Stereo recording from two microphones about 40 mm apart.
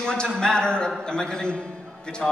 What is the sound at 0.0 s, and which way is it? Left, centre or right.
Speech, centre.